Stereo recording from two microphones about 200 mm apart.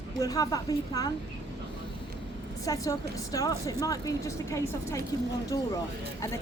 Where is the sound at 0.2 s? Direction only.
15° left (ahead or behind).